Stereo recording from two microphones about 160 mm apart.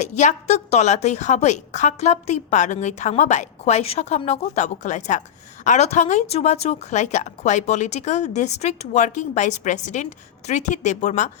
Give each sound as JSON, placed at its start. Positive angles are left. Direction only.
{"t": 0.0, "sound": "a woman's voice", "side_deg": 45}